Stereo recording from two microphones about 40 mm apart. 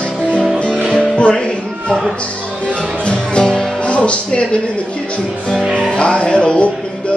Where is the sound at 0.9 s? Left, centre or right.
Left.